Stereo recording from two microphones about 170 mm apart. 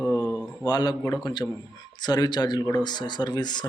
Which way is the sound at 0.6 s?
25° left (ahead or behind).